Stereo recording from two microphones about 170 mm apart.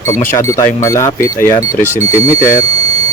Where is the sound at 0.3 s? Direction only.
20° left (ahead or behind).